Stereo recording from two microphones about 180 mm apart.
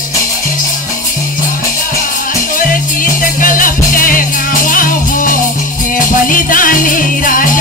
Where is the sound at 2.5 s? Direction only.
50° left (ahead or behind).